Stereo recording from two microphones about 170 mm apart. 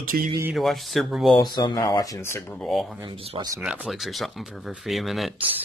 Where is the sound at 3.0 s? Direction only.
30° right (ahead or behind).